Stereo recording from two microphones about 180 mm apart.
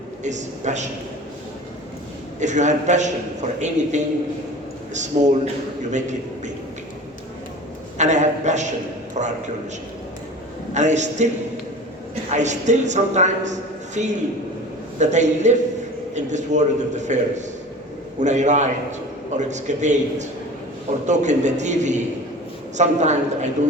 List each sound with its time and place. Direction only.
0.2 s a man's voice: 40° right (ahead or behind)
2.4 s a man's voice: 40° right (ahead or behind)
5.2 s a man's voice: 40° right (ahead or behind)
7.9 s a man's voice: 40° right (ahead or behind)
10.8 s a man's voice: 40° right (ahead or behind)
12.3 s a man's voice: 40° right (ahead or behind)